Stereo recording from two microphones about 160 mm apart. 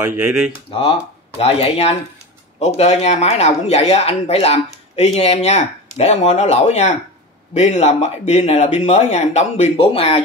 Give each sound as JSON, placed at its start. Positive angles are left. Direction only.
{"t": 0.0, "sound": "speech", "side_deg": -15}
{"t": 0.7, "sound": "speech", "side_deg": 35}